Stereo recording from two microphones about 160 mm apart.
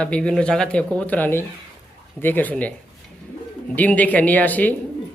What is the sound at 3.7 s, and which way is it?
Speech, 10° left (ahead or behind).